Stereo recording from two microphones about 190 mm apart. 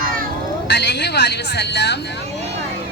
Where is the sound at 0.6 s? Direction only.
65° left (ahead or behind).